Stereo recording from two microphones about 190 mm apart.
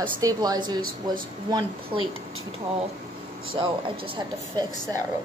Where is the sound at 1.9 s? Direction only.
25° right (ahead or behind).